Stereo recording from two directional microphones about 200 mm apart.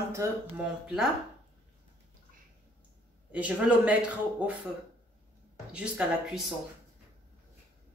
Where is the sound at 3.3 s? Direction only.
5° right (ahead or behind).